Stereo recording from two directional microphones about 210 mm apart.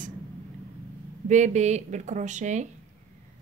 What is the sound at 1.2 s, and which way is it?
Speech, 35° right (ahead or behind).